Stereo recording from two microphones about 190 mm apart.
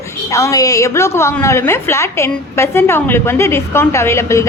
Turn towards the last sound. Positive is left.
turn(degrees=15)  # may be behind; listen again after turning